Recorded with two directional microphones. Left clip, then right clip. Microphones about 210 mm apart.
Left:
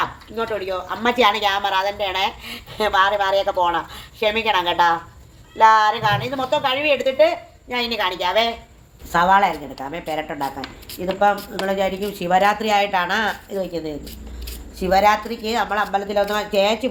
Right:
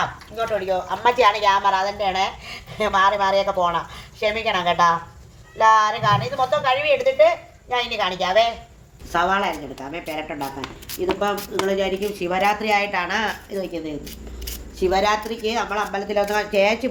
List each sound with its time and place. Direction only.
0.3 s speech: 20° left (ahead or behind)
14.8 s speech: 35° left (ahead or behind); by 16.9 s 15° left (ahead or behind)